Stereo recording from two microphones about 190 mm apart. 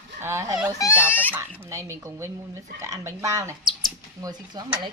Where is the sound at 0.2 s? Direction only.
15° right (ahead or behind).